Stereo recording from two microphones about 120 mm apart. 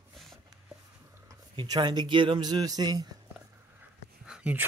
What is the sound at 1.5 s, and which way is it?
Speech, 35° right (ahead or behind).